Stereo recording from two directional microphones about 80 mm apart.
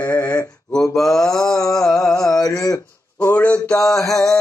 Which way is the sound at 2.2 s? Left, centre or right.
Left.